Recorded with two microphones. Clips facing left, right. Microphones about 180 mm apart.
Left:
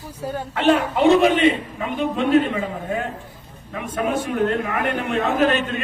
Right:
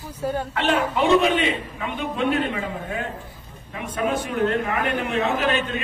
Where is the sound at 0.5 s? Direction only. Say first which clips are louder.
Left 7 dB; 50° left (ahead or behind).